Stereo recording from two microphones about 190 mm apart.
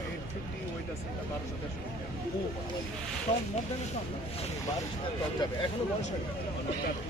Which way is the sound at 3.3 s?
30° left (ahead or behind).